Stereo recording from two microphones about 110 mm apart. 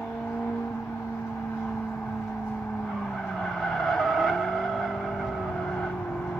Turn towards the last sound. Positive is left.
turn(degrees=0)  # may be behind; listen again after turning